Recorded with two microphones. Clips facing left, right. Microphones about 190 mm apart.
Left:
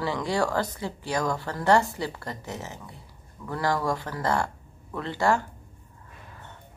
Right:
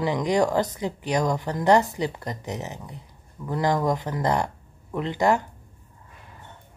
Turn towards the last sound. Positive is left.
turn(degrees=-20)  # may be behind; listen again after turning